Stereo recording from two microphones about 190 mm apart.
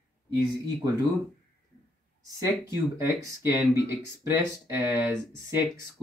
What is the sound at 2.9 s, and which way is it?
Speech, 15° right (ahead or behind).